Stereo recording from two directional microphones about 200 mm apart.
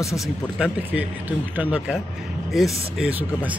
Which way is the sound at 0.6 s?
5° right (ahead or behind).